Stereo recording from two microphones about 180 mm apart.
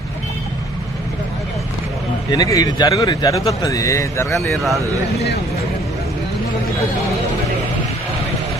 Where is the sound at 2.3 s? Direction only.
20° left (ahead or behind).